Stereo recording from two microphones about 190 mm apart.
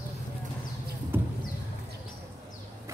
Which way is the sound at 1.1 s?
10° right (ahead or behind).